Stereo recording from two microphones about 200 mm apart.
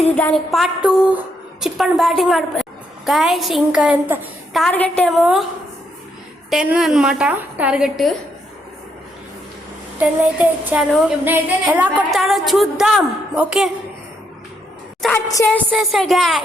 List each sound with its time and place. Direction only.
0.2 s a woman's voice: 5° left (ahead or behind)
4.6 s a woman's voice: 5° left (ahead or behind)
6.5 s a woman's voice: 5° right (ahead or behind)
10.0 s a woman's voice: 10° right (ahead or behind)
15.1 s a woman's voice: 15° left (ahead or behind)
15.4 s a woman's voice: centre (ahead or behind)